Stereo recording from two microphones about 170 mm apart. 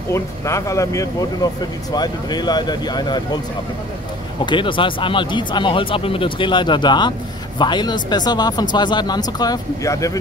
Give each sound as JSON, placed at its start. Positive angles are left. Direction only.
{"t": 0.1, "sound": "speech", "side_deg": 15}
{"t": 4.5, "sound": "speech", "side_deg": 30}